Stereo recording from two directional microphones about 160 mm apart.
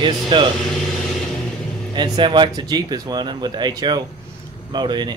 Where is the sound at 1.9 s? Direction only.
30° right (ahead or behind).